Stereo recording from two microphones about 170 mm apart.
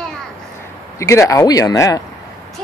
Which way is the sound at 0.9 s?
15° left (ahead or behind).